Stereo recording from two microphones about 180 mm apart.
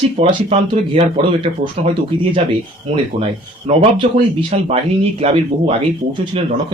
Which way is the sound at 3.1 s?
35° right (ahead or behind).